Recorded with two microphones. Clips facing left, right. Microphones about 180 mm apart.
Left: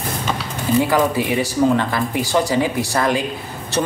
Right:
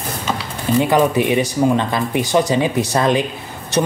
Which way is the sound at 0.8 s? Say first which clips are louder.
Right 3 dB; 20° right (ahead or behind).